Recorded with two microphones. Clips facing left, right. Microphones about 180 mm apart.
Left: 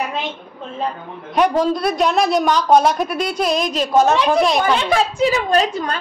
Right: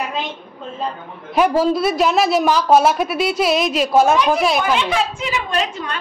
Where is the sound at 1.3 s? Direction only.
5° right (ahead or behind).